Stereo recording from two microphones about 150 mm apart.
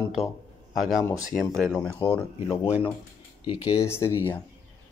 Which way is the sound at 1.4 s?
Centre (ahead or behind).